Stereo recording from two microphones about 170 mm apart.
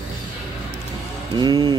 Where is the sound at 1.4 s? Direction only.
25° right (ahead or behind).